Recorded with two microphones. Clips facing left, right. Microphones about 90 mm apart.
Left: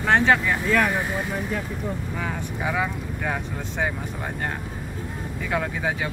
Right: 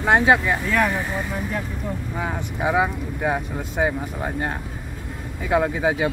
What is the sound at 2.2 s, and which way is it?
Speech, 20° right (ahead or behind).